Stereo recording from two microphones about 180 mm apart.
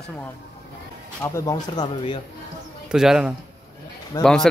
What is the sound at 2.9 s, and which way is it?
Speech, 5° right (ahead or behind).